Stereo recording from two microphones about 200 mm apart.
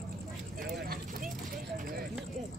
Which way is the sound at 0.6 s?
45° right (ahead or behind).